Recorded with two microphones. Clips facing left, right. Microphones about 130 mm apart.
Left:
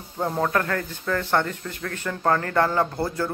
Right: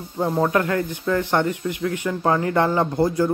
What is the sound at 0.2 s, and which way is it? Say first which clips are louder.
Speech: right 4 dB; 10° right (ahead or behind).